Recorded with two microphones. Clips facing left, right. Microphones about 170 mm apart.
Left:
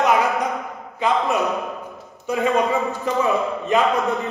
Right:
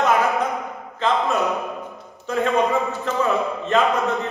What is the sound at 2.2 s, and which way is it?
A man's voice, 15° left (ahead or behind).